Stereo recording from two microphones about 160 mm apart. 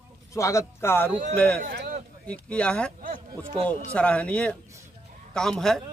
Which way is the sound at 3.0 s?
55° right (ahead or behind).